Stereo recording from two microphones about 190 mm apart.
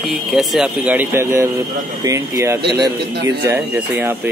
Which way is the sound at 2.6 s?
55° right (ahead or behind).